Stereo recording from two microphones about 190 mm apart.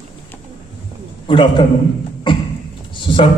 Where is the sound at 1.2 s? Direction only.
25° left (ahead or behind).